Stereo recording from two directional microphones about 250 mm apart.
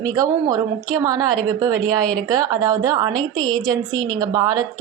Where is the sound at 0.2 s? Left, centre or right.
Centre.